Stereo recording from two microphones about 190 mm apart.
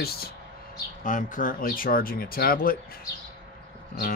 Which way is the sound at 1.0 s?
45° left (ahead or behind).